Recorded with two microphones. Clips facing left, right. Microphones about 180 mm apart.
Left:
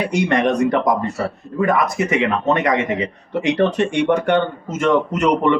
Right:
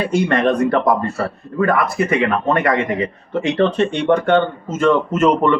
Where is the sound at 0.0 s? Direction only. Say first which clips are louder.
Right 1 dB; 20° left (ahead or behind).